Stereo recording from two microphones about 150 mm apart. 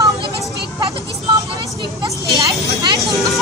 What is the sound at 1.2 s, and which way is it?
Vehicle, 35° right (ahead or behind).